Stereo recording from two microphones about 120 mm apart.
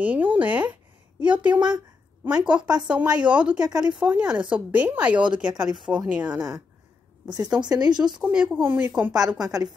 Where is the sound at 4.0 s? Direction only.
10° right (ahead or behind).